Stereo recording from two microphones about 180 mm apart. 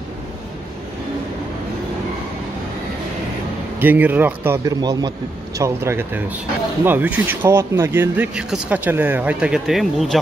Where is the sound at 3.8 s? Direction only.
10° right (ahead or behind).